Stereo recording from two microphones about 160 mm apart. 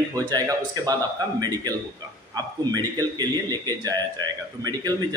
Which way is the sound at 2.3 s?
25° right (ahead or behind).